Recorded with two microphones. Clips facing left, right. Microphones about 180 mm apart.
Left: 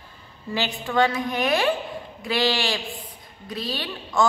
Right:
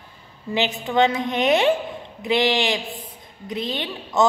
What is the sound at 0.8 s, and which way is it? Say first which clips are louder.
A woman's voice: right 1 dB; 20° right (ahead or behind).